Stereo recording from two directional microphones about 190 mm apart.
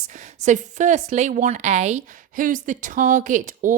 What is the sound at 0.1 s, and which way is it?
A woman's voice, 40° right (ahead or behind).